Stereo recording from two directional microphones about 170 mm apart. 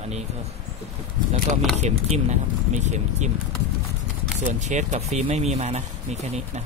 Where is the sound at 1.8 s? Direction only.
45° right (ahead or behind).